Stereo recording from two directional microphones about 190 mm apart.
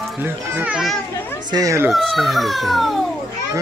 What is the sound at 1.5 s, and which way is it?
Speech, 20° right (ahead or behind).